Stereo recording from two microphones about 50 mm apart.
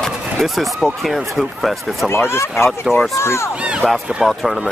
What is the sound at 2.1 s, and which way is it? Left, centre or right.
Speech, left.